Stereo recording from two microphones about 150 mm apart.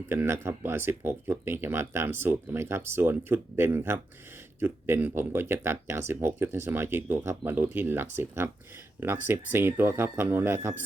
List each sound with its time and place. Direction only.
0.1 s speech: 15° right (ahead or behind)